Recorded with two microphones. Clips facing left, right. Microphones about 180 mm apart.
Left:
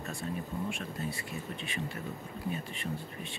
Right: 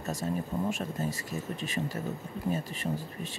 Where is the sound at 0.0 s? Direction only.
40° right (ahead or behind).